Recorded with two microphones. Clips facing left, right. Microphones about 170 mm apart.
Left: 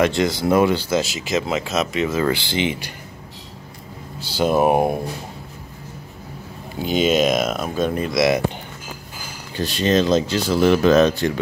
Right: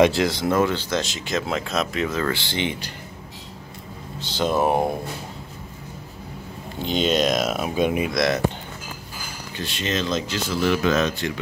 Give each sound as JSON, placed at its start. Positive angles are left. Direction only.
{"t": 0.1, "sound": "speech", "side_deg": 0}
{"t": 0.5, "sound": "speech", "side_deg": 10}
{"t": 4.2, "sound": "speech", "side_deg": 10}
{"t": 6.8, "sound": "speech", "side_deg": 5}
{"t": 8.1, "sound": "speech", "side_deg": 5}
{"t": 9.6, "sound": "speech", "side_deg": 35}